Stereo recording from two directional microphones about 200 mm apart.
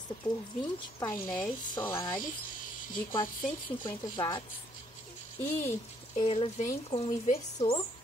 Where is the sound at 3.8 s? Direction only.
20° left (ahead or behind).